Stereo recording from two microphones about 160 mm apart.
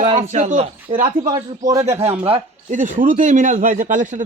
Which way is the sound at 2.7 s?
55° right (ahead or behind).